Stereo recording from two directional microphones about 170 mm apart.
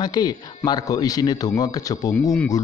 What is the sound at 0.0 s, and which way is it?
Speech, 25° left (ahead or behind).